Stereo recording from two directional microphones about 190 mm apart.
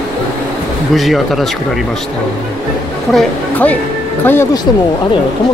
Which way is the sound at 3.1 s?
10° left (ahead or behind).